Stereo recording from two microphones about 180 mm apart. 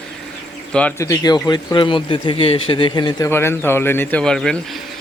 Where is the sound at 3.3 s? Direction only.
15° left (ahead or behind).